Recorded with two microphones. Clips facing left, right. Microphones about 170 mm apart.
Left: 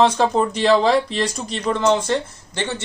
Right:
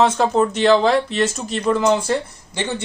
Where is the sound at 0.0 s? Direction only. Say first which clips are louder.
Even; 5° right (ahead or behind).